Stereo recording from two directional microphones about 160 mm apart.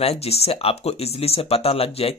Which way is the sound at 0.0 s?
40° left (ahead or behind).